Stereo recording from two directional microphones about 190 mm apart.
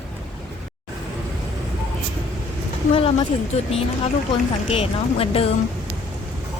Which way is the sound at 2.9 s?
30° left (ahead or behind).